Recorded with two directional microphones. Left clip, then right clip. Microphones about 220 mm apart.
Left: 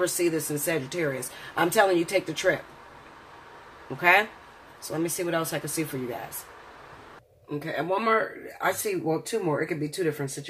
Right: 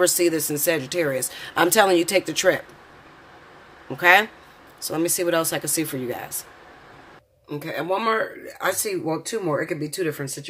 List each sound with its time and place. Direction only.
0.0 s speech: 35° right (ahead or behind)
4.0 s speech: 35° right (ahead or behind)
7.4 s speech: 25° right (ahead or behind)